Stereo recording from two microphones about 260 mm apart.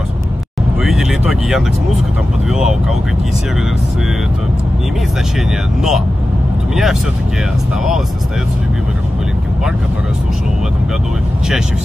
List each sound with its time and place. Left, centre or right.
0.8 s speech: centre
5.8 s speech: centre